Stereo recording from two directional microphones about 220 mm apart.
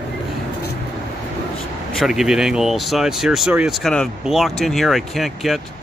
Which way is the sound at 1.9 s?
Centre (ahead or behind).